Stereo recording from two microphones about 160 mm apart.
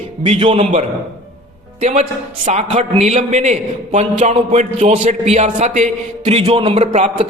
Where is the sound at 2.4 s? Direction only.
40° right (ahead or behind).